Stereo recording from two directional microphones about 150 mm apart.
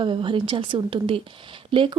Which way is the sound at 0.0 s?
35° right (ahead or behind).